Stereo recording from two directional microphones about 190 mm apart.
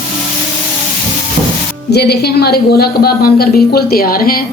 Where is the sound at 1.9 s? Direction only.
60° left (ahead or behind).